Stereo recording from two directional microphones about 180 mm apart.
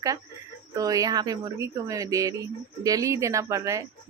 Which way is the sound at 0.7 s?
20° right (ahead or behind).